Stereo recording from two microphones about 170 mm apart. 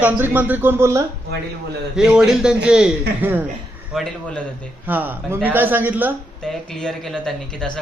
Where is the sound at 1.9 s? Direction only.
5° right (ahead or behind).